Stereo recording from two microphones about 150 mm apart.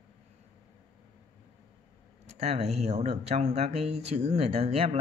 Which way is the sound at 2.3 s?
45° right (ahead or behind).